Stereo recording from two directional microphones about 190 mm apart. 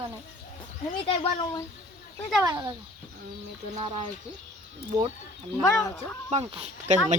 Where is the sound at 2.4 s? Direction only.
20° right (ahead or behind).